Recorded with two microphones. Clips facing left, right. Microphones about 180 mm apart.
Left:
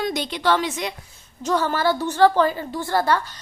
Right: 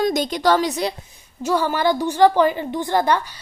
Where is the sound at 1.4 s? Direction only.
10° right (ahead or behind).